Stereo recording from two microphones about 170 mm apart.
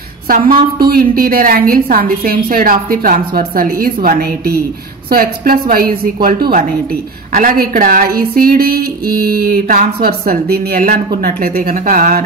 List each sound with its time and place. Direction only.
0.7 s a woman's voice: 60° right (ahead or behind)